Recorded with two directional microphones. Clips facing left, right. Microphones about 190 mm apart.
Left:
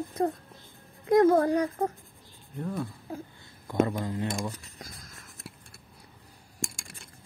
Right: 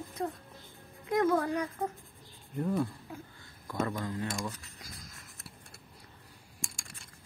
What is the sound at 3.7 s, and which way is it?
Speech, 20° left (ahead or behind).